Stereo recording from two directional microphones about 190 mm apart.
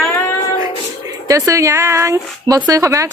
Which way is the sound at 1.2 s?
15° right (ahead or behind).